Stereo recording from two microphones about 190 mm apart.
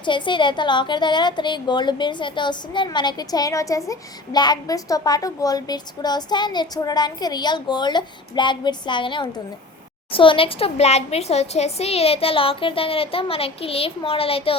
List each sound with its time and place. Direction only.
0.0 s a woman's voice: 25° left (ahead or behind)